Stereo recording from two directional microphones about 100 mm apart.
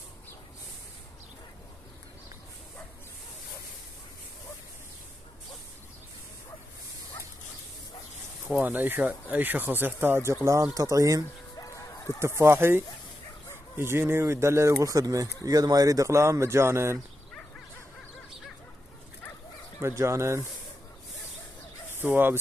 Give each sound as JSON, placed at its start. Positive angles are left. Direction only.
{"t": 8.5, "sound": "speech", "side_deg": -15}
{"t": 10.4, "sound": "speech", "side_deg": -35}
{"t": 12.4, "sound": "speech", "side_deg": -25}
{"t": 19.8, "sound": "speech", "side_deg": -30}
{"t": 21.9, "sound": "speech", "side_deg": -20}